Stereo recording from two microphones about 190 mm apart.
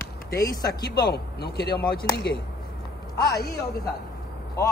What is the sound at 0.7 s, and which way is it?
A man's voice, 55° left (ahead or behind).